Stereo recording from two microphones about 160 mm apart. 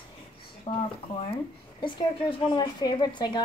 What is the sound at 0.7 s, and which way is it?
Speech, 35° left (ahead or behind).